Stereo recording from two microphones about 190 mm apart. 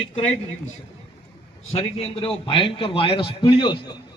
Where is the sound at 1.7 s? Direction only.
30° left (ahead or behind).